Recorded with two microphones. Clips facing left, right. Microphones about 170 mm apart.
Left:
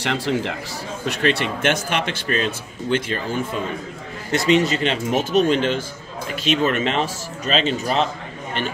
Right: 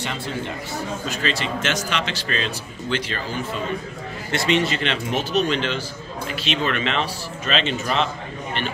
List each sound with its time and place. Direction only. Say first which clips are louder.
0.0 s a man's voice: left 6 dB; 80° left
1.0 s speech: left 8 dB; 65° left (ahead or behind)
4.3 s speech: left 4 dB; 40° left (ahead or behind)